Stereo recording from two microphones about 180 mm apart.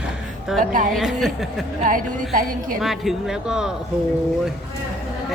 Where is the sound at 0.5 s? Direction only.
Centre (ahead or behind).